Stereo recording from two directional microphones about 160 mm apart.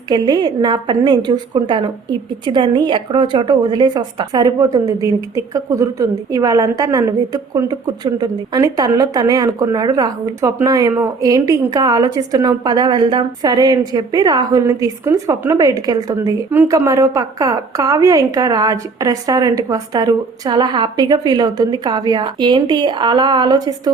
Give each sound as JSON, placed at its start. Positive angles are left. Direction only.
{"t": 0.1, "sound": "a woman's voice", "side_deg": -25}